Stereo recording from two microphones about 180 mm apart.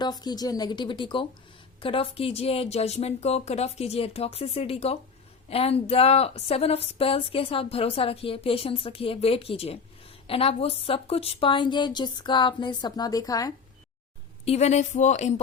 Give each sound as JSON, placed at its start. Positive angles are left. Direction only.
{"t": 0.0, "sound": "a woman's voice", "side_deg": 20}
{"t": 14.4, "sound": "speech", "side_deg": 35}